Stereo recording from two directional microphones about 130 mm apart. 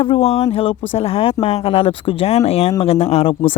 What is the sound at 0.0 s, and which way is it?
Speech, 45° left (ahead or behind).